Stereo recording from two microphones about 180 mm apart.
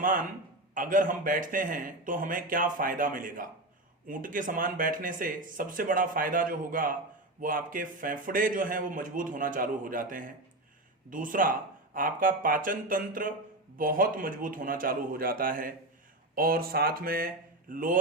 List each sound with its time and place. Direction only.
0.0 s a man's voice: 50° right (ahead or behind)